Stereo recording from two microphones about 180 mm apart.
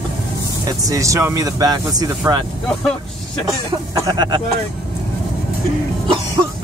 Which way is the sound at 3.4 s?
20° right (ahead or behind).